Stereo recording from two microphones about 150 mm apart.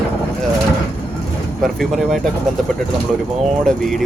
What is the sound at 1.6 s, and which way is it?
Speech, centre (ahead or behind).